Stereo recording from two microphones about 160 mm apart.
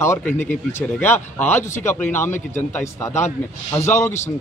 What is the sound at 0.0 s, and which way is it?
A man's voice, 15° left (ahead or behind).